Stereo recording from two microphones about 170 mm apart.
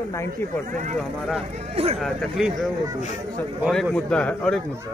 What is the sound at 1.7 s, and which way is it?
Speech, 40° right (ahead or behind).